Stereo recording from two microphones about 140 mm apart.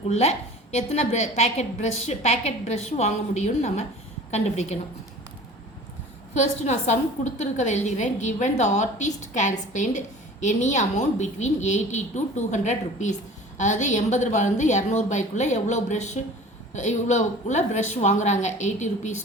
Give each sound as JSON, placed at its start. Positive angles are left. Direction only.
{"t": 0.1, "sound": "a woman's voice", "side_deg": 50}
{"t": 6.3, "sound": "a woman's voice", "side_deg": 55}